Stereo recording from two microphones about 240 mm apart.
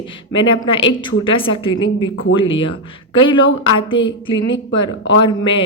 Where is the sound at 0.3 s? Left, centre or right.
Left.